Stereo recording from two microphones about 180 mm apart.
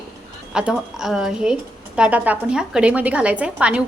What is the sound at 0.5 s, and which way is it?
A woman's voice, 5° right (ahead or behind).